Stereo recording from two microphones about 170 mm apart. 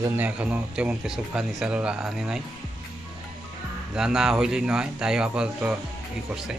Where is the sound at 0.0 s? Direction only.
10° right (ahead or behind).